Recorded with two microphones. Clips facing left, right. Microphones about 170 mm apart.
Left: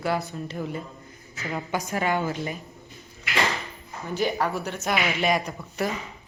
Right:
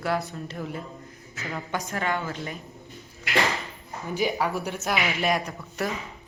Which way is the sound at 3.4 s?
Centre (ahead or behind).